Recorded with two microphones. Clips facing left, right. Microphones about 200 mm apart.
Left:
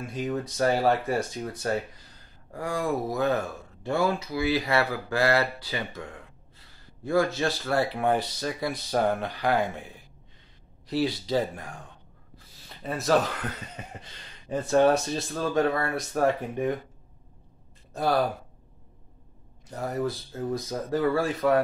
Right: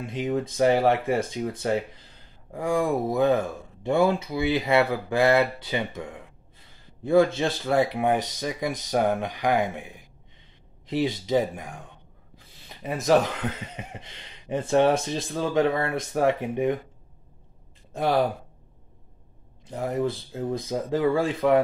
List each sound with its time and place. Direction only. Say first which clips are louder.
0.0 s speech: right 3 dB; 20° right (ahead or behind)
17.9 s speech: right 2 dB; 20° right (ahead or behind)
19.7 s speech: right 3 dB; 20° right (ahead or behind)